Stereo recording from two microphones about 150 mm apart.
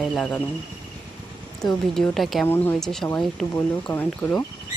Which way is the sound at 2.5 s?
15° left (ahead or behind).